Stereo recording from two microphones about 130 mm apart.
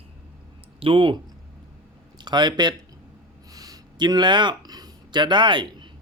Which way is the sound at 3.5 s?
30° right (ahead or behind).